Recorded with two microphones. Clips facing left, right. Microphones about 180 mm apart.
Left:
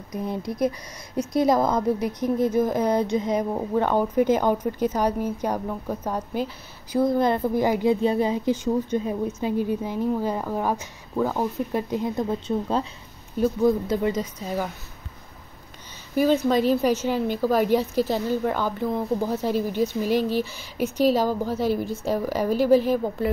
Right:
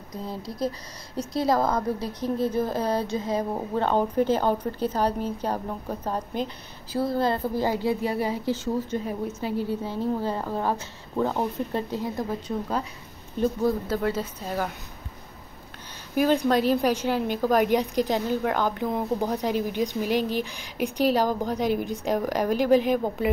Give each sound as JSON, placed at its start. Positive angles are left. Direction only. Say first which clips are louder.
{"t": 0.1, "sound": "speech", "louder": "left 5 dB", "side_deg": 20}
{"t": 11.9, "sound": "speech", "louder": "left 4 dB", "side_deg": 20}
{"t": 16.5, "sound": "a woman's voice", "louder": "left 2 dB", "side_deg": -10}